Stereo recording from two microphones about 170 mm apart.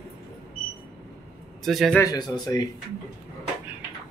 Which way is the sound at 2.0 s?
20° left (ahead or behind).